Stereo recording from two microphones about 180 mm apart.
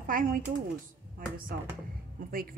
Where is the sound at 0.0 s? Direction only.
50° right (ahead or behind).